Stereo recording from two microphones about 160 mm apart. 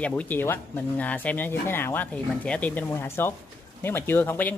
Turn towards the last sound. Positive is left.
turn(degrees=10)  # may be behind; listen again after turning